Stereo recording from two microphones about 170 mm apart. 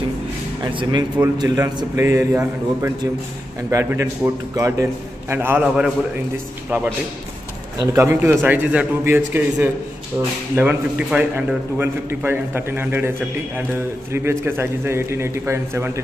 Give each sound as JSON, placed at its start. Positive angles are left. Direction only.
{"t": 0.7, "sound": "a man's voice", "side_deg": -30}
{"t": 14.1, "sound": "a man's voice", "side_deg": -15}